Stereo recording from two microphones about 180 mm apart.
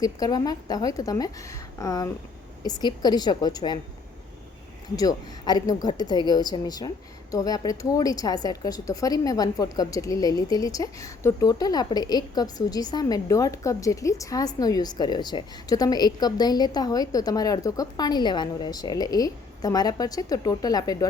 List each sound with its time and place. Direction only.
0.0 s a woman's voice: 20° left (ahead or behind)
4.9 s a woman's voice: 20° left (ahead or behind)